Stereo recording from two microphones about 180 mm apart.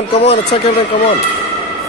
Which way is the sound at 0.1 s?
35° left (ahead or behind).